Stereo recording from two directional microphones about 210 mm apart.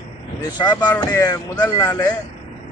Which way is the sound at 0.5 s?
20° left (ahead or behind).